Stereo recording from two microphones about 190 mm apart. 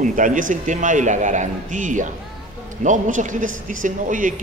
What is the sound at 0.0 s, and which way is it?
Speech, 45° right (ahead or behind).